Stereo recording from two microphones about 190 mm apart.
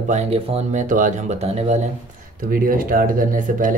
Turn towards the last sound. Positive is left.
turn(degrees=-45)  # may be behind; listen again after turning